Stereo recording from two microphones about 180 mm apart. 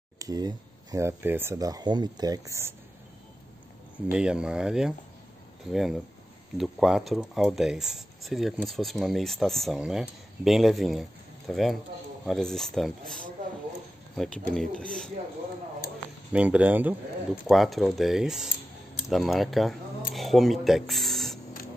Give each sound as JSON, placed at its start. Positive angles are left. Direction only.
{"t": 0.2, "sound": "speech", "side_deg": -20}
{"t": 4.1, "sound": "speech", "side_deg": -5}
{"t": 16.3, "sound": "speech", "side_deg": -10}